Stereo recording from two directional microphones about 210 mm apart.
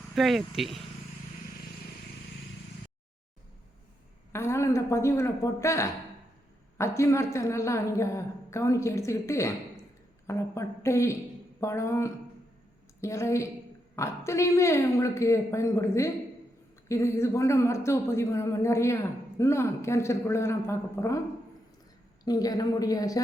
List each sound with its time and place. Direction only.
0.1 s speech: centre (ahead or behind)
4.3 s a woman's voice: 10° left (ahead or behind)
22.2 s a woman's voice: 20° left (ahead or behind)